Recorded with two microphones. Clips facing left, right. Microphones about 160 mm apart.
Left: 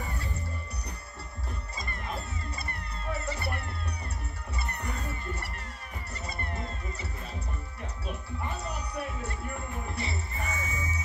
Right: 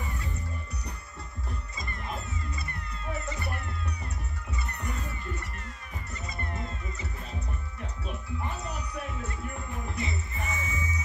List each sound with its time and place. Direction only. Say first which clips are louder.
2.5 s music: even; 35° left (ahead or behind)
9.9 s music: right 1 dB; 35° left (ahead or behind)